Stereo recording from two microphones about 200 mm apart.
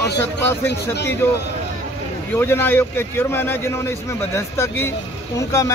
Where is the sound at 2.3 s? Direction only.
10° left (ahead or behind).